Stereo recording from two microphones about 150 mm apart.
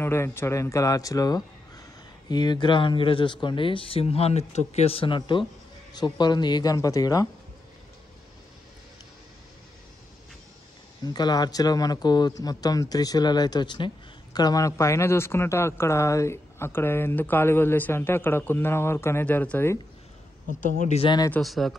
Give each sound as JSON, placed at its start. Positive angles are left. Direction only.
{"t": 0.0, "sound": "speech", "side_deg": 15}
{"t": 11.1, "sound": "speech", "side_deg": 25}
{"t": 20.4, "sound": "speech", "side_deg": 55}
{"t": 21.0, "sound": "speech", "side_deg": 30}
{"t": 21.3, "sound": "speech", "side_deg": 0}